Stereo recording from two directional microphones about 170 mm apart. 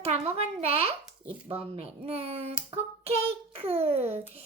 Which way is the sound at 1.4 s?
35° right (ahead or behind).